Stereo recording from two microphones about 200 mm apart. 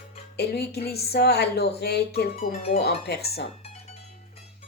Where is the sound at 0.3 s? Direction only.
55° left (ahead or behind).